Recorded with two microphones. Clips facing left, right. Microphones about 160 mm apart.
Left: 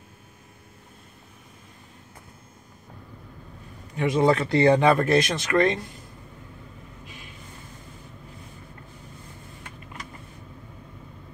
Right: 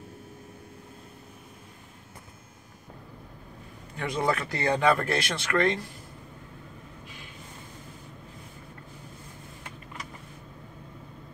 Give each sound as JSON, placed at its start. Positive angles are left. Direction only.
{"t": 3.9, "sound": "speech", "side_deg": 20}